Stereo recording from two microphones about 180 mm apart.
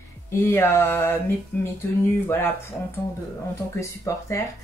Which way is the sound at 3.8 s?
15° left (ahead or behind).